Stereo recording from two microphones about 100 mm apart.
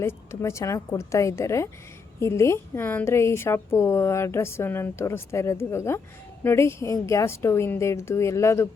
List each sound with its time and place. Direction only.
0.0 s a woman's voice: 25° left (ahead or behind)